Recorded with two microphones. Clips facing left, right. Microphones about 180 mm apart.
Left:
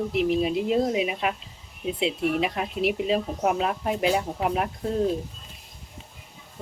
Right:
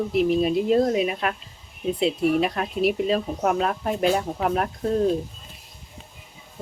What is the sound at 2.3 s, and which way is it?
Speech, 15° left (ahead or behind).